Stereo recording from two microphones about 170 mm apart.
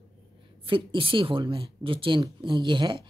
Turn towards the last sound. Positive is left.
turn(degrees=-30)  # may be behind; listen again after turning